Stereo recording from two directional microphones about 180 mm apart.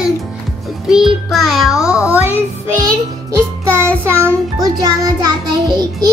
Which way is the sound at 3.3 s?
15° right (ahead or behind).